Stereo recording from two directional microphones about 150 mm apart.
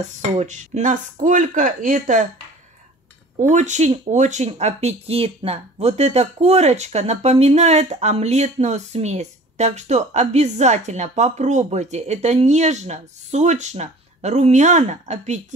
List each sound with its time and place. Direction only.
0.4 s speech: 50° right (ahead or behind)
3.3 s speech: 50° right (ahead or behind)